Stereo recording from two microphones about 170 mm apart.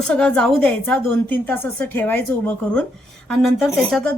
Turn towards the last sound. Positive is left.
turn(degrees=0)  # may be behind; listen again after turning